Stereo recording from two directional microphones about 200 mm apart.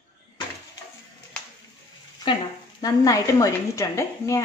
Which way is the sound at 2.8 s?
15° left (ahead or behind).